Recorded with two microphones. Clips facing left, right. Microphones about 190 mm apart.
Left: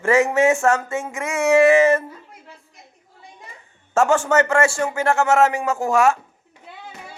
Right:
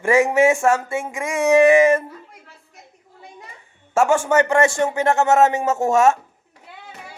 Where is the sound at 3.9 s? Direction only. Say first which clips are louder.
Even; 10° right (ahead or behind).